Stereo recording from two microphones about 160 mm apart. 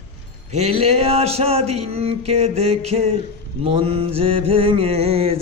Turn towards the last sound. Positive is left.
turn(degrees=-40)  # may be behind; listen again after turning